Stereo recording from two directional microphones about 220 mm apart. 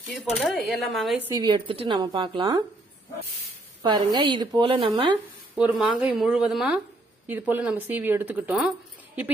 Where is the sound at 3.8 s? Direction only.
20° right (ahead or behind).